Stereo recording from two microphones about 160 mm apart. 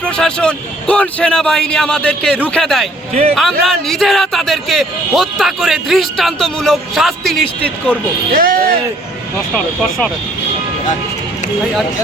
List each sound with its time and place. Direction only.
0.0 s a man's voice: 5° left (ahead or behind)
8.3 s speech: 60° right (ahead or behind)